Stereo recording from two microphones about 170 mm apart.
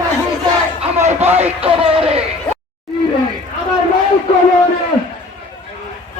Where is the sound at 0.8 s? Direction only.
40° right (ahead or behind).